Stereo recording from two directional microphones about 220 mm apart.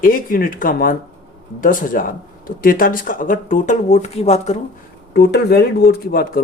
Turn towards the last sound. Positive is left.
turn(degrees=45)  # may be behind; listen again after turning